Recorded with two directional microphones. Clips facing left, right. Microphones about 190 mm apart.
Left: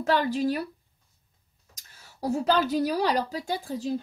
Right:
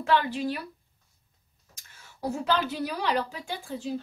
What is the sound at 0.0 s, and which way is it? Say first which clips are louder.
Speech: left 2 dB; 40° left (ahead or behind).